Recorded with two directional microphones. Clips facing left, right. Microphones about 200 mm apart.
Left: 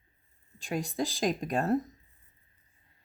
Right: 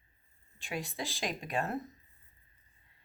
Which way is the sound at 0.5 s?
40° left (ahead or behind).